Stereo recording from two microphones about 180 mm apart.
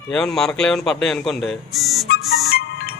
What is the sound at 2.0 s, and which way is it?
Music, 60° left (ahead or behind).